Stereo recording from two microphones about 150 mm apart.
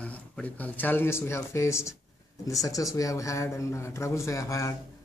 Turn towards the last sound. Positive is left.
turn(degrees=20)  # may be behind; listen again after turning